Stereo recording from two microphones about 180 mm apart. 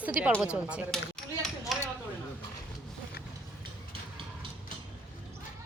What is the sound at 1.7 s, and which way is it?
Dishes, centre (ahead or behind).